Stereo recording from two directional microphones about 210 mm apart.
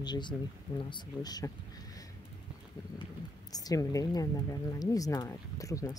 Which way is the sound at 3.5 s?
20° left (ahead or behind).